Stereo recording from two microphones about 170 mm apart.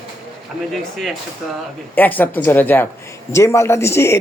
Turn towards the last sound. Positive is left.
turn(degrees=15)  # may be behind; listen again after turning